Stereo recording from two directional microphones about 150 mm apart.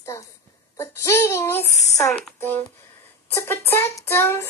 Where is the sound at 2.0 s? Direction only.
5° left (ahead or behind).